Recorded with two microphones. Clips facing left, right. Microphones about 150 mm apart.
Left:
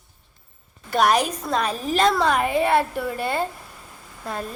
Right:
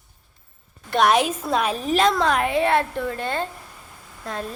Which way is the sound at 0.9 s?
Centre (ahead or behind).